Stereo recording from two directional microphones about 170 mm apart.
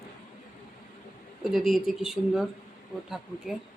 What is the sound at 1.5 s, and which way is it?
Speech, centre (ahead or behind).